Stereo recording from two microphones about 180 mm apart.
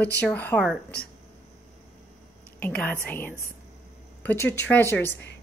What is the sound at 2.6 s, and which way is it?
Speech, 10° left (ahead or behind).